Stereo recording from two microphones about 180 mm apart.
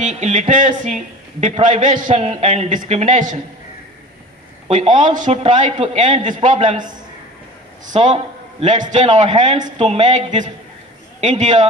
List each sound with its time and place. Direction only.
0.0 s a man's voice: 40° right (ahead or behind)
4.6 s a man's voice: 45° right (ahead or behind)